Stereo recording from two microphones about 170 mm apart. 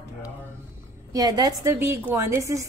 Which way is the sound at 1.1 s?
20° right (ahead or behind).